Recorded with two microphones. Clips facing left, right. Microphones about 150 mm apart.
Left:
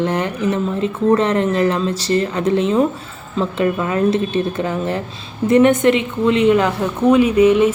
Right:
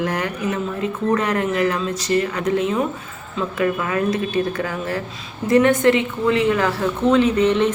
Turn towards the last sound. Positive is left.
turn(degrees=10)  # may be behind; listen again after turning